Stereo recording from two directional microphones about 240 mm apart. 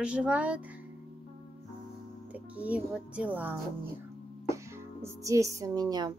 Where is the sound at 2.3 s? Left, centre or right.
Centre.